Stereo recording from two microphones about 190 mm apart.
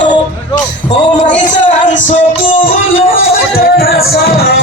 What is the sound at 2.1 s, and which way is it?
Music, 45° left (ahead or behind).